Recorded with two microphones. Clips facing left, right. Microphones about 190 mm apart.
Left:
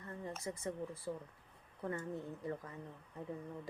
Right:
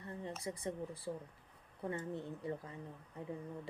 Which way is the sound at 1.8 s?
20° right (ahead or behind).